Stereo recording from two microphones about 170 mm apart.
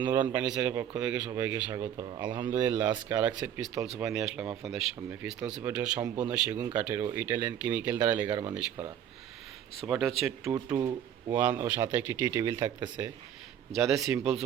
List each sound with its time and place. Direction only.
0.0 s speech: 10° right (ahead or behind)
2.0 s speech: 25° right (ahead or behind)
2.5 s speech: 10° right (ahead or behind)
9.8 s speech: centre (ahead or behind)